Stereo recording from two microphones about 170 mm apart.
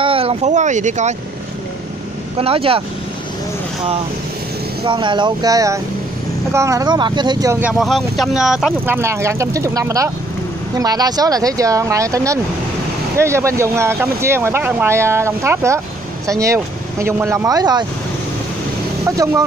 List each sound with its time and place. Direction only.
0.0 s a sound: 35° right (ahead or behind)
2.3 s speech: 35° right (ahead or behind)
4.8 s speech: 30° right (ahead or behind)
7.6 s speech: centre (ahead or behind)
8.8 s speech: 15° right (ahead or behind)
19.0 s speech: 20° right (ahead or behind)